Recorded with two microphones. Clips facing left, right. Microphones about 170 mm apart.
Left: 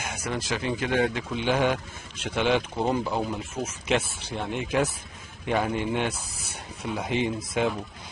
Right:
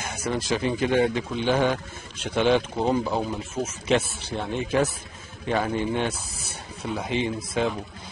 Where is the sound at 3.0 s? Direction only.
10° right (ahead or behind).